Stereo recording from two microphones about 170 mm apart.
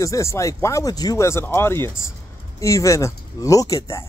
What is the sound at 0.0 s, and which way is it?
Speech, 20° left (ahead or behind).